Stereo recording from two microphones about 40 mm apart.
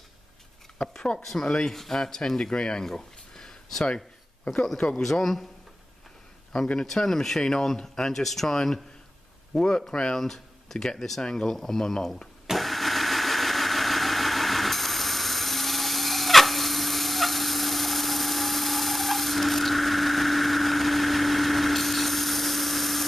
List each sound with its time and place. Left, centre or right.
0.7 s speech: centre
1.2 s speech: centre
4.7 s speech: left
5.0 s speech: centre
6.5 s speech: centre
12.4 s engine starting: centre